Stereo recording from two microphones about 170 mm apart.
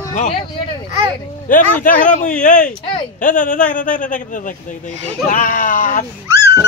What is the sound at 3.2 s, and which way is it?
Speech, 50° left (ahead or behind).